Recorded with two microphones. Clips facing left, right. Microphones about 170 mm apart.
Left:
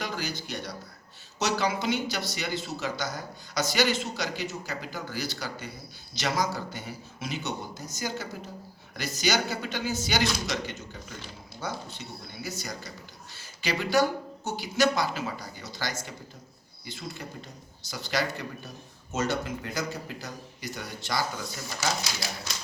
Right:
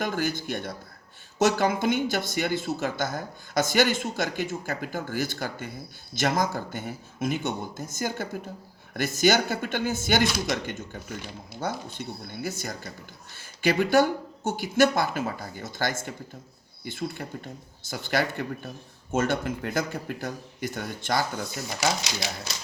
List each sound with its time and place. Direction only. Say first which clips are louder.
0.0 s speech: right 6 dB; 50° right (ahead or behind)